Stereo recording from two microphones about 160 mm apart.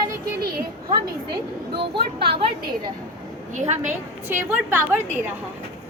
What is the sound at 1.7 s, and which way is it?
Speech, 90° right.